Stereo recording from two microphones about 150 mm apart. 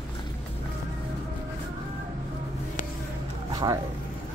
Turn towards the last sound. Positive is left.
turn(degrees=-25)  # may be behind; listen again after turning